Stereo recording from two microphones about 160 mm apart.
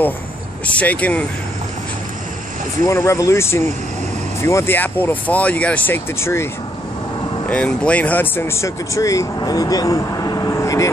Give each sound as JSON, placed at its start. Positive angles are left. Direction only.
{"t": 0.7, "sound": "speech", "side_deg": 10}
{"t": 2.8, "sound": "speech", "side_deg": 20}
{"t": 7.4, "sound": "speech", "side_deg": 5}